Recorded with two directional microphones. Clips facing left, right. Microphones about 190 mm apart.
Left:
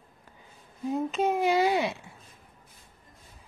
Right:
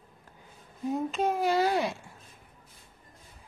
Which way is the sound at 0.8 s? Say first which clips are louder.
Left 1 dB; centre (ahead or behind).